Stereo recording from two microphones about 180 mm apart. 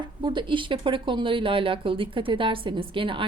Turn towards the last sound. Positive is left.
turn(degrees=-30)  # may be behind; listen again after turning